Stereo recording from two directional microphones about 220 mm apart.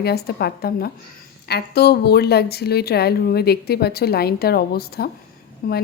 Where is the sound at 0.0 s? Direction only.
45° left (ahead or behind).